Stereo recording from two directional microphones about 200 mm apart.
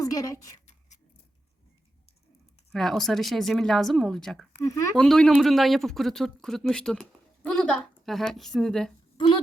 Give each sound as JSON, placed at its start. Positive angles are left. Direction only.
{"t": 0.0, "sound": "speech", "side_deg": 15}
{"t": 2.7, "sound": "speech", "side_deg": 0}
{"t": 4.6, "sound": "speech", "side_deg": 15}
{"t": 5.0, "sound": "speech", "side_deg": 0}
{"t": 9.1, "sound": "speech", "side_deg": 25}